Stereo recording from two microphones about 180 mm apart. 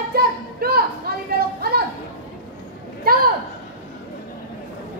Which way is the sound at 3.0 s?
55° right (ahead or behind).